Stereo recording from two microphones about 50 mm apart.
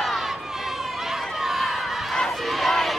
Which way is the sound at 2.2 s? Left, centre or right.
Centre.